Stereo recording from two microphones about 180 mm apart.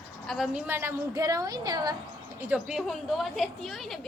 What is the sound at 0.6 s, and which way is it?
A woman's voice, 10° right (ahead or behind).